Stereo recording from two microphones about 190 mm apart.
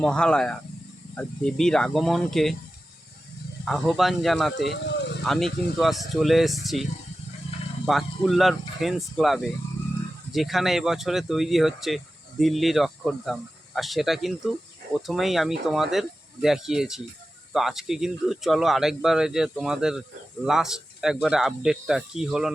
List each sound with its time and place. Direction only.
0.0 s speech: 5° left (ahead or behind)
3.7 s speech: centre (ahead or behind)
4.7 s a sound: 65° left (ahead or behind)
5.2 s speech: centre (ahead or behind)
7.9 s speech: centre (ahead or behind)